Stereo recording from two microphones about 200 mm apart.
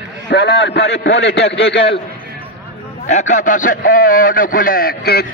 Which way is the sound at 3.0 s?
35° left (ahead or behind).